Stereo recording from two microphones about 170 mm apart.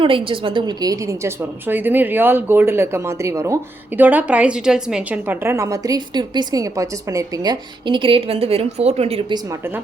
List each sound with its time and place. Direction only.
0.0 s a woman's voice: 30° right (ahead or behind)
9.5 s a woman's voice: 15° right (ahead or behind)